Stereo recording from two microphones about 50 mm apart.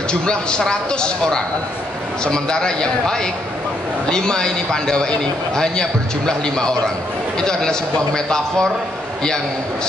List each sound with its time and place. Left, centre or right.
0.1 s a man's voice: centre